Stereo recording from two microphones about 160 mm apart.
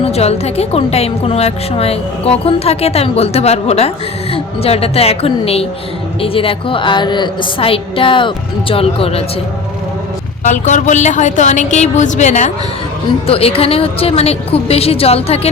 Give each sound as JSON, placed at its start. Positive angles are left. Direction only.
{"t": 0.0, "sound": "speech", "side_deg": 40}
{"t": 10.4, "sound": "a woman's voice", "side_deg": 50}
{"t": 13.2, "sound": "speech", "side_deg": 35}